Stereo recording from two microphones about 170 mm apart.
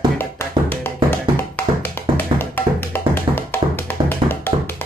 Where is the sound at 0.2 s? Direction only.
15° left (ahead or behind).